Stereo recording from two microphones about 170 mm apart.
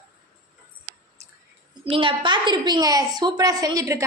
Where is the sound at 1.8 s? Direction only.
30° right (ahead or behind).